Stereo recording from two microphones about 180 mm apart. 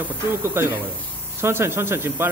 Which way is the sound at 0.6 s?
10° right (ahead or behind).